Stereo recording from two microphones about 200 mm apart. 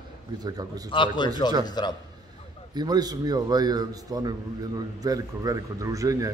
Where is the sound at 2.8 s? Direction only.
20° right (ahead or behind).